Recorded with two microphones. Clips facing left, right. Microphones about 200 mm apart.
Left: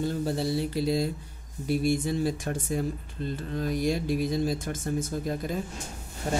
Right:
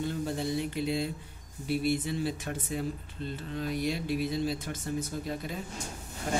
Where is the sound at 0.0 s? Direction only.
35° left (ahead or behind).